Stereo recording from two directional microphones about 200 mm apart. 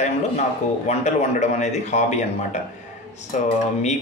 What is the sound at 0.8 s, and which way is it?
Speech, 35° left (ahead or behind).